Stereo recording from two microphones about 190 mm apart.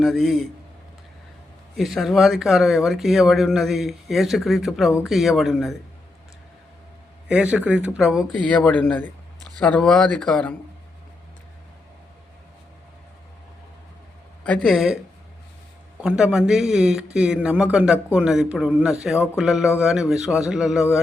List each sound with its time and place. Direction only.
0.0 s speech: centre (ahead or behind)
1.7 s speech: centre (ahead or behind)
7.3 s speech: 5° right (ahead or behind)
14.4 s speech: 5° left (ahead or behind)
16.0 s speech: 5° right (ahead or behind)